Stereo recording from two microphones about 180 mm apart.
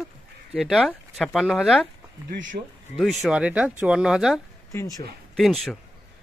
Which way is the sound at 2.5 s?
45° right (ahead or behind).